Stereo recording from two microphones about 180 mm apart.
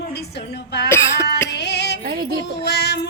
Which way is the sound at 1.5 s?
70° left (ahead or behind).